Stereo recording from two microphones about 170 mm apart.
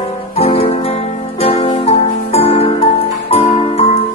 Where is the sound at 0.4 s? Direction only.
35° left (ahead or behind).